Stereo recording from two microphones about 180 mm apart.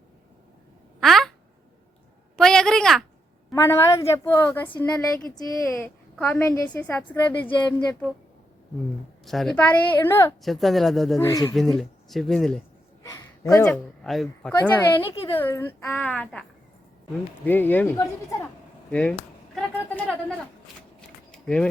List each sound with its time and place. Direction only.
0.9 s quack: centre (ahead or behind)
2.3 s a sound: 5° left (ahead or behind)
3.5 s a woman's voice: 15° left (ahead or behind)
5.8 s a woman's voice: 5° left (ahead or behind)
7.4 s speech: 25° left (ahead or behind)
9.2 s a woman's voice: centre (ahead or behind)
10.4 s speech: centre (ahead or behind)
11.2 s a woman's voice: 15° left (ahead or behind)
11.5 s speech: centre (ahead or behind)
13.1 s a man's voice: 15° left (ahead or behind)
14.0 s a woman's voice: centre (ahead or behind)
21.3 s a sound: 5° left (ahead or behind)